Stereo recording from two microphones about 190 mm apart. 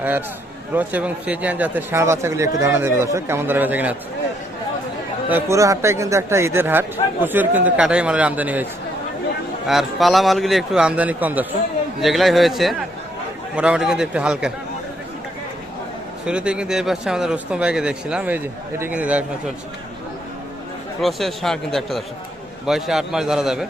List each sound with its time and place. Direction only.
0.0 s speech: 10° right (ahead or behind)
5.3 s speech: 15° right (ahead or behind)
9.6 s speech: centre (ahead or behind)
16.2 s speech: 5° right (ahead or behind)
21.0 s speech: centre (ahead or behind)